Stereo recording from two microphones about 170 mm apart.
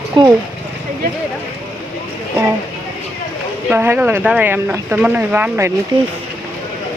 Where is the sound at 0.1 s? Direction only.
30° right (ahead or behind).